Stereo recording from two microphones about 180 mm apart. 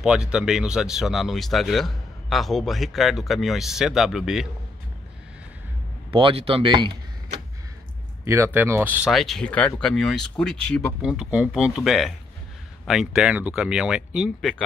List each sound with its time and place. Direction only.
0.0 s speech: 5° right (ahead or behind)
6.1 s speech: 30° right (ahead or behind)
8.3 s speech: 10° right (ahead or behind)